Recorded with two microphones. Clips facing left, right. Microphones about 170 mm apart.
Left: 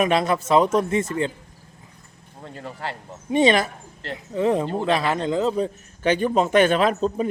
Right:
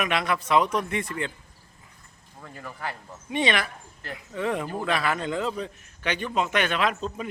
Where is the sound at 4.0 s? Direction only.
30° left (ahead or behind).